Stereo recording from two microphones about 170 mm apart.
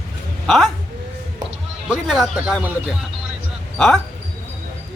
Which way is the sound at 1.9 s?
Centre (ahead or behind).